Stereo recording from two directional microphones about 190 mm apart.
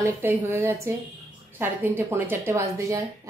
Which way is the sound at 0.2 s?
10° right (ahead or behind).